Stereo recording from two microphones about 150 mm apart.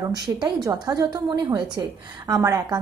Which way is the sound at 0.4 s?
25° right (ahead or behind).